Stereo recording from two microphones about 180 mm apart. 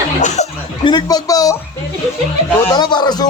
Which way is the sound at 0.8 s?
25° left (ahead or behind).